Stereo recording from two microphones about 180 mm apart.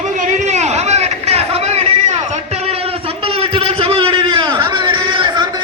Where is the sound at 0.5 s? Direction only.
40° right (ahead or behind).